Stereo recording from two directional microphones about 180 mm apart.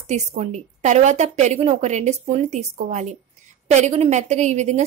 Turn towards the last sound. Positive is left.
turn(degrees=-40)  # may be behind; listen again after turning